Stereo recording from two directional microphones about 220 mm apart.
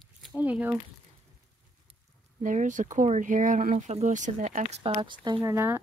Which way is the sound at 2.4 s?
35° right (ahead or behind).